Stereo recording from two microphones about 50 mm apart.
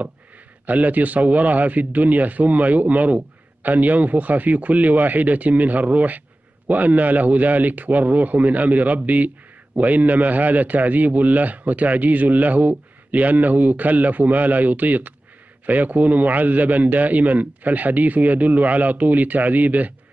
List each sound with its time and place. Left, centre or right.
0.7 s a man's voice: right